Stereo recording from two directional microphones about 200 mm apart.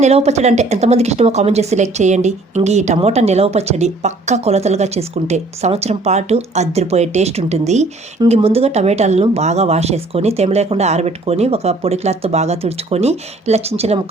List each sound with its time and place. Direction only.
0.0 s speech: 35° right (ahead or behind)